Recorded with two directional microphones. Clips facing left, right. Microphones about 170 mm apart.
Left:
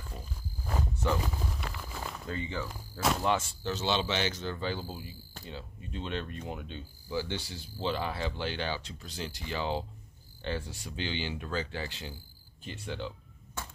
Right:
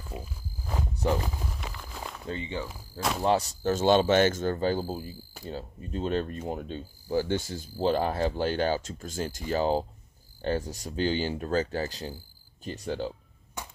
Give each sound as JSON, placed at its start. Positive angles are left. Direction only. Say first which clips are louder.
{"t": 0.1, "sound": "insect", "louder": "right 4 dB", "side_deg": -5}
{"t": 0.9, "sound": "speech", "louder": "right 4 dB", "side_deg": -35}
{"t": 1.2, "sound": "a sound", "louder": "even", "side_deg": 0}
{"t": 2.2, "sound": "speech", "louder": "right 3 dB", "side_deg": -25}
{"t": 3.2, "sound": "speech", "louder": "right 5 dB", "side_deg": -35}
{"t": 5.4, "sound": "cricket", "louder": "right 7 dB", "side_deg": -40}
{"t": 7.8, "sound": "speech", "louder": "right 7 dB", "side_deg": -45}
{"t": 10.4, "sound": "cricket", "louder": "right 7 dB", "side_deg": -40}
{"t": 13.6, "sound": "a sound", "louder": "right 1 dB", "side_deg": -15}